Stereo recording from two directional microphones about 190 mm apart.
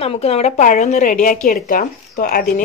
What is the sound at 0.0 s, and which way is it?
A woman's voice, 30° left (ahead or behind).